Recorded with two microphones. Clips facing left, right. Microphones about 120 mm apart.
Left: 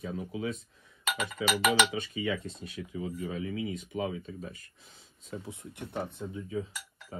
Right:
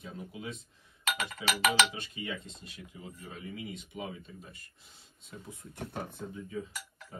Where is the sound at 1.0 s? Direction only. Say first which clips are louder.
Left 2 dB; centre (ahead or behind).